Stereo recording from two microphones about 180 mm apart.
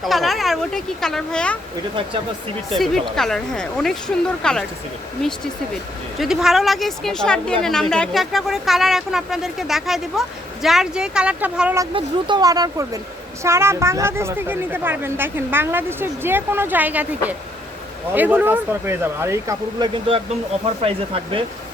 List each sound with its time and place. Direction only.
0.0 s speech: centre (ahead or behind)
2.6 s speech: centre (ahead or behind)
6.1 s speech: centre (ahead or behind)
11.9 s speech: 25° right (ahead or behind)